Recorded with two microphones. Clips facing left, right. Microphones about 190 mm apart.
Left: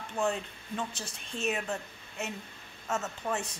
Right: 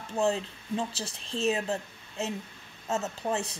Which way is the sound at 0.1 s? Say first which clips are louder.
Right 4 dB; 30° right (ahead or behind).